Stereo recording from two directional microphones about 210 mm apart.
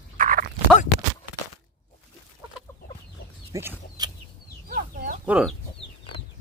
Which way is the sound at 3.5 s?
15° right (ahead or behind).